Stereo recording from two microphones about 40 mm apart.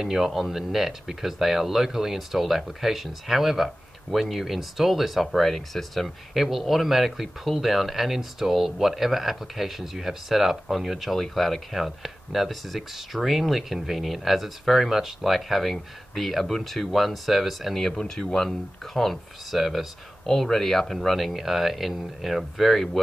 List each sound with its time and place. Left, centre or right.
0.0 s speech: centre
17.9 s speech: centre
20.2 s speech: centre